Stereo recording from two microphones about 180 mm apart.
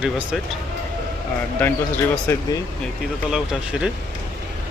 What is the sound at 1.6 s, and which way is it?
Speech, 10° left (ahead or behind).